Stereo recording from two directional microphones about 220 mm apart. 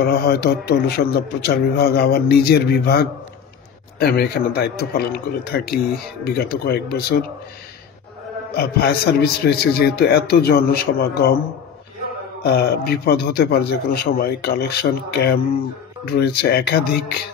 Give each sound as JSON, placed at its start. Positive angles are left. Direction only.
{"t": 0.0, "sound": "a man's voice", "side_deg": 50}
{"t": 8.5, "sound": "a man's voice", "side_deg": 45}
{"t": 12.5, "sound": "a man's voice", "side_deg": 45}